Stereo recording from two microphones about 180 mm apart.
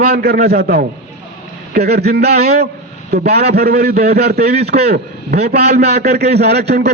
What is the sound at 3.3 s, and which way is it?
A man's voice, 60° right (ahead or behind).